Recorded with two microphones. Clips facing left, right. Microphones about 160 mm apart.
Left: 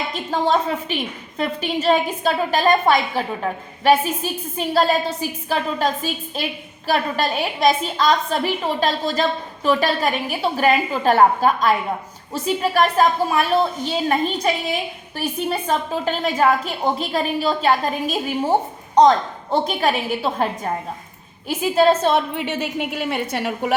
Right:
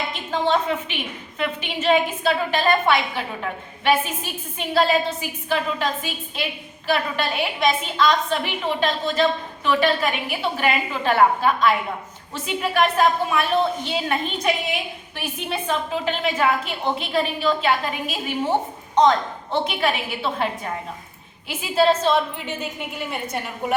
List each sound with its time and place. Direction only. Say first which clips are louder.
0.1 s a woman's voice: left 3 dB; 40° left (ahead or behind); by 23.7 s 75° left (ahead or behind)